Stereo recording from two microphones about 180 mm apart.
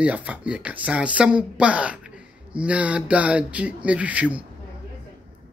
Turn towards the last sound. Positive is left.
turn(degrees=-10)  # may be behind; listen again after turning